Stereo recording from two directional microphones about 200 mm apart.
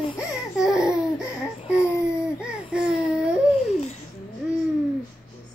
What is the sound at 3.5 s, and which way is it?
Babbling, 35° left (ahead or behind).